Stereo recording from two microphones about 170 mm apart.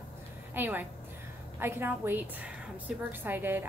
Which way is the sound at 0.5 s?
10° right (ahead or behind).